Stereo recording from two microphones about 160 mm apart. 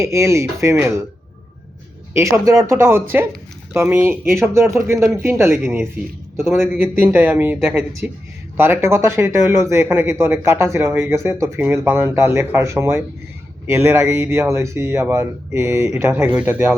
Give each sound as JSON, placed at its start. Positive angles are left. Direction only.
{"t": 0.0, "sound": "speech", "side_deg": -15}
{"t": 2.1, "sound": "speech", "side_deg": -15}